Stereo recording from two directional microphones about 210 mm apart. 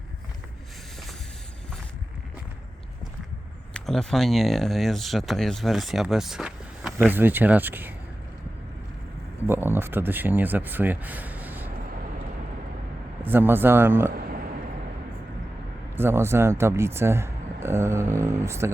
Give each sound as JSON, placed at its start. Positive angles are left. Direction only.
{"t": 3.8, "sound": "speech", "side_deg": 0}
{"t": 9.5, "sound": "speech", "side_deg": -10}
{"t": 13.2, "sound": "speech", "side_deg": -10}
{"t": 14.1, "sound": "a sound", "side_deg": -50}
{"t": 16.0, "sound": "speech", "side_deg": -10}